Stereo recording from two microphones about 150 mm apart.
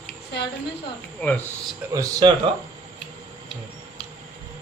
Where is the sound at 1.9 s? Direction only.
20° right (ahead or behind).